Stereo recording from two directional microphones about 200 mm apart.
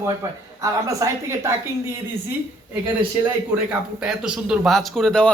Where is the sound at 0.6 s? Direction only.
15° right (ahead or behind).